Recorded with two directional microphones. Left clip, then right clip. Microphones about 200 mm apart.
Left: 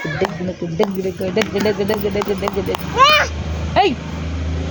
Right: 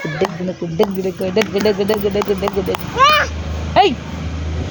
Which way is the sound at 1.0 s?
45° right (ahead or behind).